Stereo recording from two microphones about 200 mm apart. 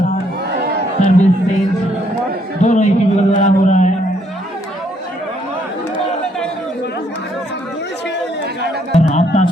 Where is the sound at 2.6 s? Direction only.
35° left (ahead or behind).